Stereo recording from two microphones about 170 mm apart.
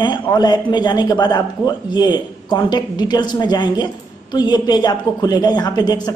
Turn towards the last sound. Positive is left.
turn(degrees=25)  # may be behind; listen again after turning